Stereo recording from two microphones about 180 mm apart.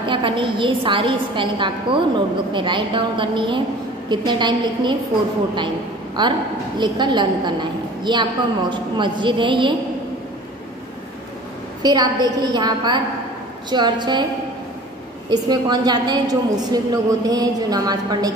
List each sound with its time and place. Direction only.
0.0 s a woman's voice: 30° right (ahead or behind)
6.2 s a woman's voice: 25° right (ahead or behind)
11.8 s a woman's voice: 20° right (ahead or behind)
15.3 s a woman's voice: 20° right (ahead or behind)